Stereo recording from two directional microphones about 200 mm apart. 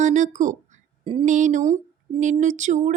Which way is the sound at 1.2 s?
40° right (ahead or behind).